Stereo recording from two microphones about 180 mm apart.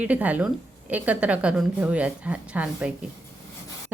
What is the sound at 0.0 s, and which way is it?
A woman's voice, 10° right (ahead or behind).